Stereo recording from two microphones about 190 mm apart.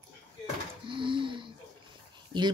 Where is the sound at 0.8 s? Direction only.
25° right (ahead or behind).